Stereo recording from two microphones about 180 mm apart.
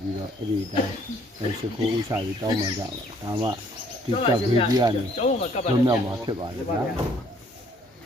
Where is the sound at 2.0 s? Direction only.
20° right (ahead or behind).